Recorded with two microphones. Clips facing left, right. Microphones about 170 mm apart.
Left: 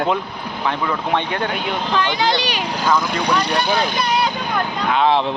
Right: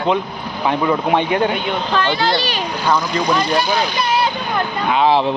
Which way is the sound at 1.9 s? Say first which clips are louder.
Right 1 dB; 15° left (ahead or behind).